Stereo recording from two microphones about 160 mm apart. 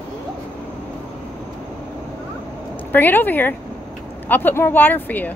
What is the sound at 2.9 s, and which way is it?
Speech, 10° left (ahead or behind).